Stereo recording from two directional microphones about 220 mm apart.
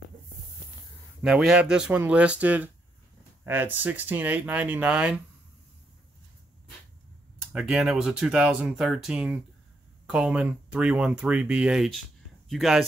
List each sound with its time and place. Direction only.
1.2 s speech: 5° right (ahead or behind)
7.5 s speech: centre (ahead or behind)